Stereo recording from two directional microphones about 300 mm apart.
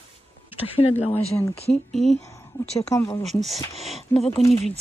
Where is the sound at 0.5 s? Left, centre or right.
Centre.